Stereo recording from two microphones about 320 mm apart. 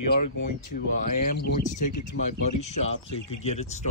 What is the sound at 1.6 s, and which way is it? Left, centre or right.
Speech, left.